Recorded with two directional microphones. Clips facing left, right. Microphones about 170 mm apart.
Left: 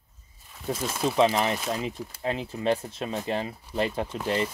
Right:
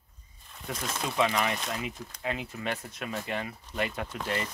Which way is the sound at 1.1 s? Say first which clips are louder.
Left 4 dB; 30° left (ahead or behind).